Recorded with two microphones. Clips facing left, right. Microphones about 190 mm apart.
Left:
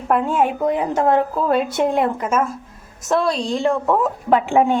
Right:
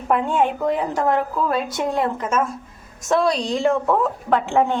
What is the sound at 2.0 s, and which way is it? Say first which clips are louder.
A woman's voice: left 2 dB; 10° left (ahead or behind).